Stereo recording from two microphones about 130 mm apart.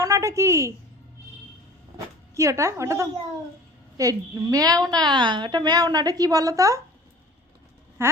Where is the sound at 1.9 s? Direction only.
20° right (ahead or behind).